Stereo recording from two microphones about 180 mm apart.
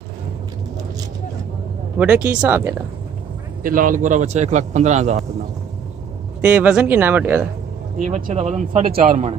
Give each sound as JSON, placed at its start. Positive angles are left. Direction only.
{"t": 2.0, "sound": "speech", "side_deg": -10}
{"t": 3.6, "sound": "a man's voice", "side_deg": -50}
{"t": 6.4, "sound": "speech", "side_deg": -5}
{"t": 8.0, "sound": "a man's voice", "side_deg": -45}